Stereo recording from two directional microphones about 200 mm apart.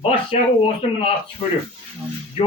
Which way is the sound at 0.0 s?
25° left (ahead or behind).